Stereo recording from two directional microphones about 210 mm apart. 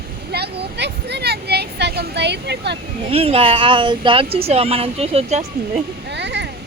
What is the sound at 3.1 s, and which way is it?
Speech, 30° right (ahead or behind).